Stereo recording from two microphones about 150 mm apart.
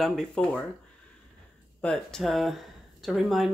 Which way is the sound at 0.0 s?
Centre (ahead or behind).